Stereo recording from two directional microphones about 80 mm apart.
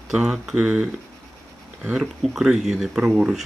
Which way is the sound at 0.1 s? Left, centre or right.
Centre.